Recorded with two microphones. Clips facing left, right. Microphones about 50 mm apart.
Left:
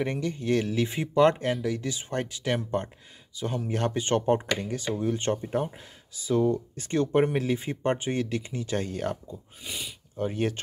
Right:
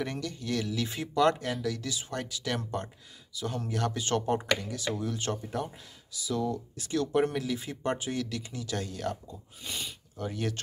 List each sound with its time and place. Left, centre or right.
0.0 s speech: left
9.7 s speech: centre
10.1 s speech: left